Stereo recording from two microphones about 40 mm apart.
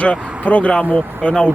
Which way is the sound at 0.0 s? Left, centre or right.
Left.